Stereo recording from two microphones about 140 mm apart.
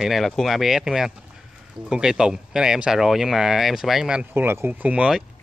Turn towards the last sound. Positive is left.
turn(degrees=-10)  # may be behind; listen again after turning